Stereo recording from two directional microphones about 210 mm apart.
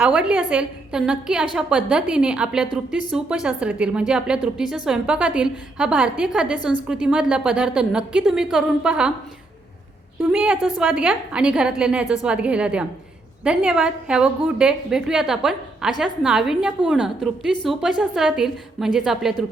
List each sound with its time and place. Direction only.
0.0 s a woman's voice: 5° right (ahead or behind)
10.2 s a woman's voice: 5° right (ahead or behind)